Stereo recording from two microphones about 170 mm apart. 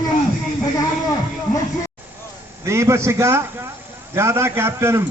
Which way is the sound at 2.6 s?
15° right (ahead or behind).